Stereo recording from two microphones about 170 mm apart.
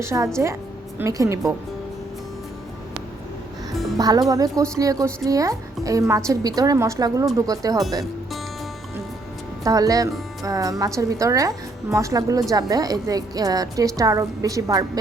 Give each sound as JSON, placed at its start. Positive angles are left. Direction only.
{"t": 0.0, "sound": "speech", "side_deg": -15}
{"t": 3.9, "sound": "a woman's voice", "side_deg": -20}
{"t": 9.6, "sound": "a woman's voice", "side_deg": -20}